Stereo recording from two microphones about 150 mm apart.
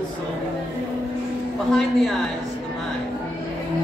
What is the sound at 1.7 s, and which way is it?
Speech, centre (ahead or behind).